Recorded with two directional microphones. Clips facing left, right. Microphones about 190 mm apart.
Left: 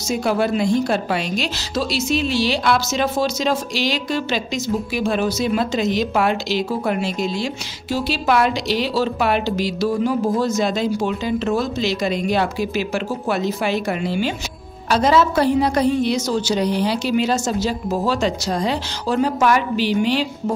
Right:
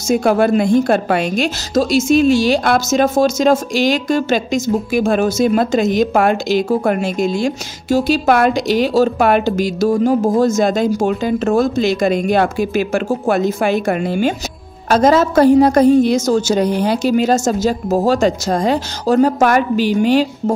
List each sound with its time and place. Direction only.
0.1 s a woman's voice: 50° right (ahead or behind)